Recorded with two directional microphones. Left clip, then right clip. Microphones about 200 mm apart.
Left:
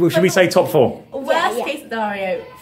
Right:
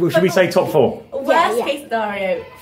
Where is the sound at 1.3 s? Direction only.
10° left (ahead or behind).